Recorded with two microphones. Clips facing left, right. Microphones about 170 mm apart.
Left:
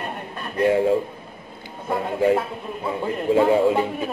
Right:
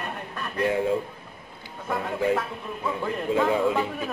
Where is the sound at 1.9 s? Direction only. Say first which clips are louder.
Left 5 dB; 30° left (ahead or behind).